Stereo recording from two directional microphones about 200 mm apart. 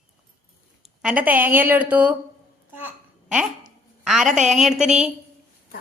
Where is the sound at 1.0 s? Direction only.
10° right (ahead or behind).